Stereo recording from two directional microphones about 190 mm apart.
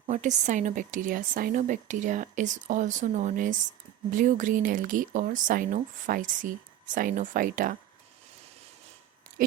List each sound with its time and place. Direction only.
0.0 s speech: 40° right (ahead or behind)